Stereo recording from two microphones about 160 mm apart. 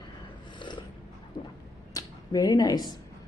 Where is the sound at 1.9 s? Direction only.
25° left (ahead or behind).